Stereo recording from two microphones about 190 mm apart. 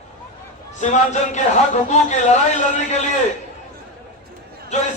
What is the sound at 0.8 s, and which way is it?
A man's voice, 40° left (ahead or behind).